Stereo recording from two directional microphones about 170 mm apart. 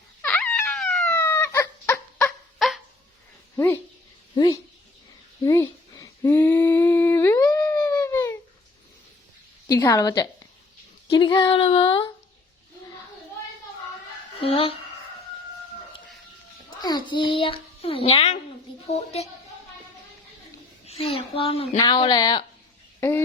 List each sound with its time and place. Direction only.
0.2 s wail: 10° left (ahead or behind)
0.8 s police car: 5° left (ahead or behind)
1.2 s chicken: 15° left (ahead or behind); by 2.8 s centre (ahead or behind)
3.5 s speech: 15° left (ahead or behind)
5.5 s humming: 20° left (ahead or behind)
9.6 s a sound: 20° left (ahead or behind)
11.2 s a child's voice: 25° left (ahead or behind)
14.4 s a child's voice: 35° left (ahead or behind)
16.8 s a child's voice: 25° left (ahead or behind)
20.8 s a child's voice: 35° left (ahead or behind)
23.0 s a sound: 15° left (ahead or behind)